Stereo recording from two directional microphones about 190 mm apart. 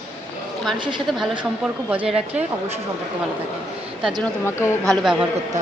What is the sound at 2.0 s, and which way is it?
Speech, 5° right (ahead or behind).